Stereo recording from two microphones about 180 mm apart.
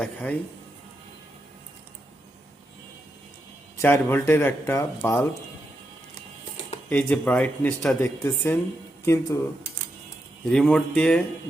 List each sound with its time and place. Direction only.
0.0 s speech: 10° left (ahead or behind)
3.8 s speech: 15° left (ahead or behind)
6.9 s speech: 5° left (ahead or behind)
8.0 s speech: 20° left (ahead or behind)
10.4 s speech: 5° left (ahead or behind)